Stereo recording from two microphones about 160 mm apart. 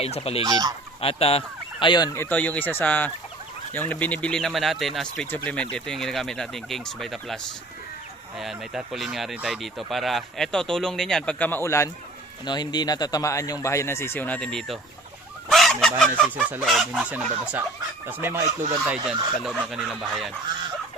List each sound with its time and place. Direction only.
0.0 s fowl: 40° left (ahead or behind)
0.4 s goose: 25° right (ahead or behind)
1.0 s speech: 35° left (ahead or behind)
2.1 s speech: 10° left (ahead or behind)
8.4 s speech: centre (ahead or behind)
15.4 s goose: centre (ahead or behind)
16.3 s speech: 10° right (ahead or behind)
18.9 s speech: 5° right (ahead or behind)